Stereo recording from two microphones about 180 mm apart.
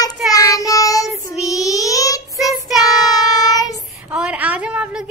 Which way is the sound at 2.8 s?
20° left (ahead or behind).